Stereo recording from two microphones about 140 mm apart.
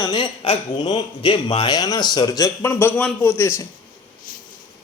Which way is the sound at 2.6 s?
15° left (ahead or behind).